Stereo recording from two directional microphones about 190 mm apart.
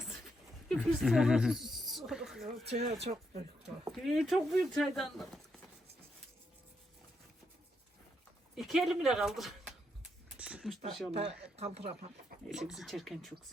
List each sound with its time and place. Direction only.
0.7 s speech: centre (ahead or behind)
2.6 s speech: 35° right (ahead or behind)
3.8 s speech: centre (ahead or behind)
8.5 s speech: centre (ahead or behind)
10.3 s a sound: 5° right (ahead or behind)
11.1 s speech: 30° right (ahead or behind)
12.5 s speech: 5° right (ahead or behind)